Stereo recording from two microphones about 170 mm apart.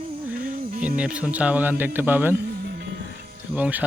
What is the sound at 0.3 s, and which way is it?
Music, 55° right (ahead or behind).